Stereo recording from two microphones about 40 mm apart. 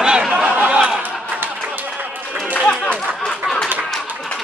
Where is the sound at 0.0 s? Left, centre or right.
Centre.